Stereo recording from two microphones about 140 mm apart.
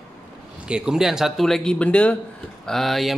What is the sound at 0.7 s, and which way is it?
Speech, 5° right (ahead or behind).